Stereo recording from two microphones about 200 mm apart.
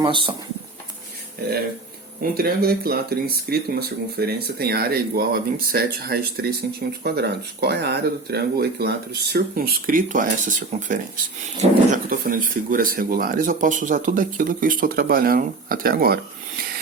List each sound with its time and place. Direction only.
0.0 s speech: 25° right (ahead or behind)
2.3 s speech: 50° right (ahead or behind)